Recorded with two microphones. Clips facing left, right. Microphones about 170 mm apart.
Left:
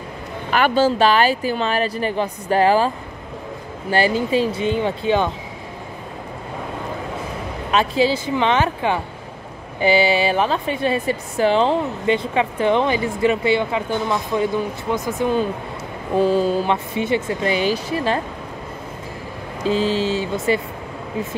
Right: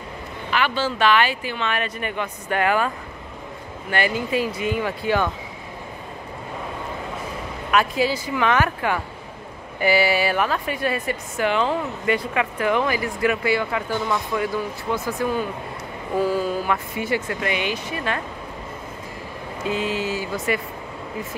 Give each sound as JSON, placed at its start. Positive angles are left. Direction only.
{"t": 0.5, "sound": "speech", "side_deg": 45}
{"t": 3.9, "sound": "speech", "side_deg": 30}
{"t": 7.7, "sound": "speech", "side_deg": 25}
{"t": 19.6, "sound": "speech", "side_deg": 30}